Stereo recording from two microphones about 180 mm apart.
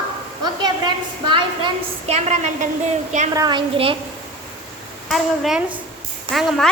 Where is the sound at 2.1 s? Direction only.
40° right (ahead or behind).